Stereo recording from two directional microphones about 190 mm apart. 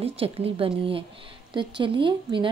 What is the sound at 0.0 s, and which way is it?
A woman's voice, 30° right (ahead or behind).